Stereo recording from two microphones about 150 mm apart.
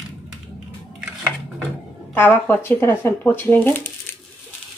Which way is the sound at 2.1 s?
10° left (ahead or behind).